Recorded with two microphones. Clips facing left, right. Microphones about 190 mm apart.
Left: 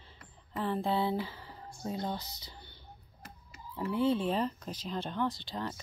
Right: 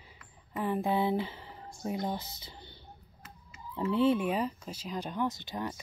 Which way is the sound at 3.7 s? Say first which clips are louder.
Right 3 dB; 20° right (ahead or behind).